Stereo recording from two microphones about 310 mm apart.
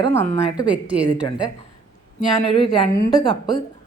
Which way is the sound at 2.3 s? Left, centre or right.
Centre.